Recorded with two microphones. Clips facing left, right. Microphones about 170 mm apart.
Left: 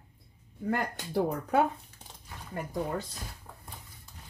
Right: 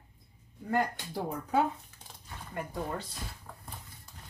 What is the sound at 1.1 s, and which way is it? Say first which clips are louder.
Speech: left 4 dB; 65° left (ahead or behind).